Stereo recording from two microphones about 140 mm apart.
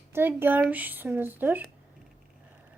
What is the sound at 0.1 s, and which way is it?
Speech, 15° right (ahead or behind).